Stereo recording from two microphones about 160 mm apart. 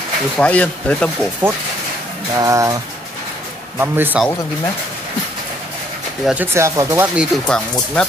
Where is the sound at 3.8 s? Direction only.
10° right (ahead or behind).